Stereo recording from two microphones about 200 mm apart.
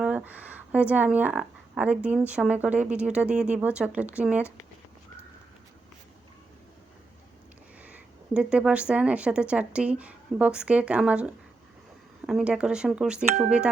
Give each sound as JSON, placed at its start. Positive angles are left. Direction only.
{"t": 0.0, "sound": "speech", "side_deg": -5}
{"t": 7.8, "sound": "speech", "side_deg": -5}